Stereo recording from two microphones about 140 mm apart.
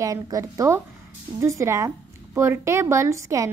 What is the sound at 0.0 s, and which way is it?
A woman's voice, 25° right (ahead or behind).